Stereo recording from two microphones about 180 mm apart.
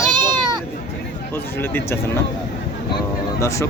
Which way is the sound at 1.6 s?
10° left (ahead or behind).